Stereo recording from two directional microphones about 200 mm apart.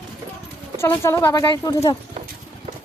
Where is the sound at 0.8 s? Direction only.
15° left (ahead or behind).